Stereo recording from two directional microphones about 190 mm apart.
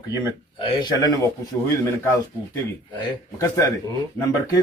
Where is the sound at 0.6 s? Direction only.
25° left (ahead or behind).